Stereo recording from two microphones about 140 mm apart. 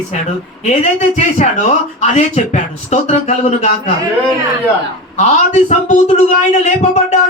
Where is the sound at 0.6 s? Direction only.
50° left (ahead or behind).